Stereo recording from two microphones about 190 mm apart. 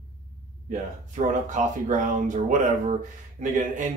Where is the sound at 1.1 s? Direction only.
40° right (ahead or behind).